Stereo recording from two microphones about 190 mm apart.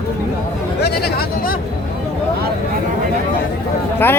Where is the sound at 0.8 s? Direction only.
55° left (ahead or behind).